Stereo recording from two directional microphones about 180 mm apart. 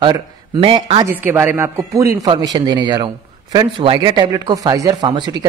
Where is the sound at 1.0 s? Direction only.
15° right (ahead or behind).